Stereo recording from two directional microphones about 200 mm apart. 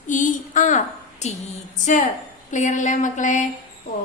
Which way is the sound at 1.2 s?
35° left (ahead or behind).